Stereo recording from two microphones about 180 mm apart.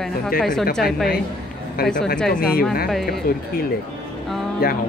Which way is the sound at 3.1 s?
55° left (ahead or behind).